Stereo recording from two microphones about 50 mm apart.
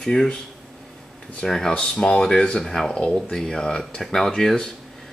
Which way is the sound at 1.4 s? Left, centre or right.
Centre.